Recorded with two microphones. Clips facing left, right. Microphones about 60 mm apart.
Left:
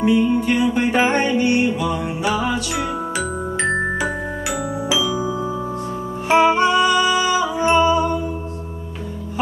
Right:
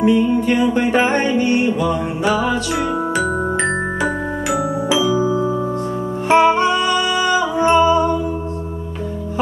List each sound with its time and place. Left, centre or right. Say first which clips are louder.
0.0 s music: right 2 dB; centre
2.4 s glockenspiel: right 3 dB; centre
5.0 s music: right 6 dB; right
6.2 s music: right 2 dB; centre